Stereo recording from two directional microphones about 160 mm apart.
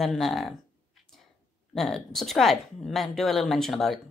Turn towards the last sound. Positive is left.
turn(degrees=0)  # may be behind; listen again after turning